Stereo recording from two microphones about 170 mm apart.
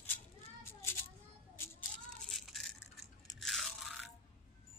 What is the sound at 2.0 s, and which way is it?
Rattle, centre (ahead or behind).